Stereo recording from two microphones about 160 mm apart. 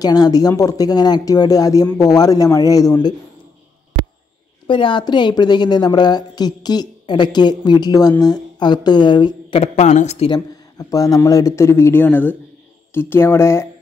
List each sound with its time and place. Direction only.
0.0 s a woman's voice: 25° left (ahead or behind)
4.6 s a woman's voice: 30° left (ahead or behind)
10.8 s speech: 20° left (ahead or behind)